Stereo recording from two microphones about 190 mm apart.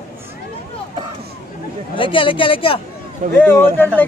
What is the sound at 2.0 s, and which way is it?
Speech, 25° left (ahead or behind).